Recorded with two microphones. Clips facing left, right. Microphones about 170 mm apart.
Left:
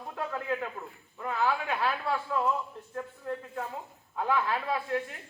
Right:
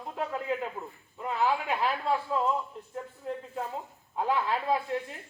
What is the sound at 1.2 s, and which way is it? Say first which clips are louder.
Speech: right 1 dB; 20° right (ahead or behind).